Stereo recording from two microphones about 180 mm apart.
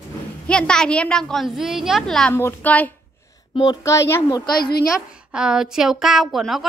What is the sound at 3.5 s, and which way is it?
A child's voice, 20° left (ahead or behind).